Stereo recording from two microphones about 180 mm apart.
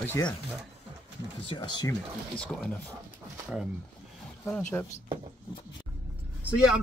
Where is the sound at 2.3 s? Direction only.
5° left (ahead or behind).